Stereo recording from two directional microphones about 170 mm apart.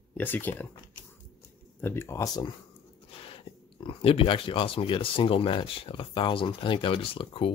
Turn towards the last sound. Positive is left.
turn(degrees=30)  # may be behind; listen again after turning